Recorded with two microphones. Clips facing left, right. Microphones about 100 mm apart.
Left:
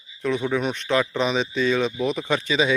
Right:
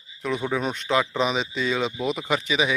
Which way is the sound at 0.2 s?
15° right (ahead or behind).